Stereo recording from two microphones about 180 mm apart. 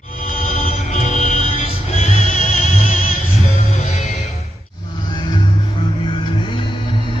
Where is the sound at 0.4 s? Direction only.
40° left (ahead or behind).